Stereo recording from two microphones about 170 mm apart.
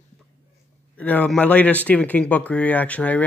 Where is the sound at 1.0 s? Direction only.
10° left (ahead or behind).